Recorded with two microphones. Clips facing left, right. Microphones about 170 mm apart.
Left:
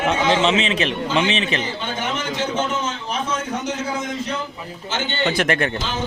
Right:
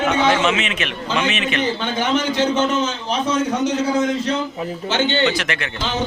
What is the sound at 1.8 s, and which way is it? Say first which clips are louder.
A man's voice: right 6 dB; 80° right.